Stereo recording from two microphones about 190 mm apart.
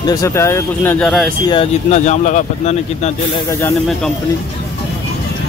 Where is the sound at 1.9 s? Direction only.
40° left (ahead or behind).